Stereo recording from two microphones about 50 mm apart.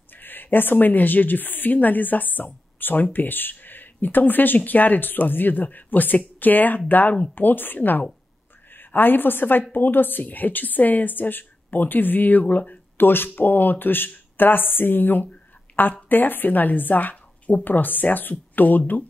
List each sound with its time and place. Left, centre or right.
0.1 s a woman's voice: left